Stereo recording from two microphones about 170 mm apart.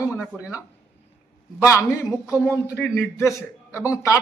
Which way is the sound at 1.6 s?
20° left (ahead or behind).